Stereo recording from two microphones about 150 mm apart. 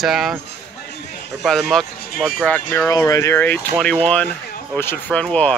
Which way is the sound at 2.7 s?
20° left (ahead or behind).